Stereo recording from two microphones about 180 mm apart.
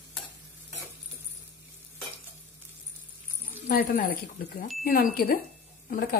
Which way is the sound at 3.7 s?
55° left (ahead or behind).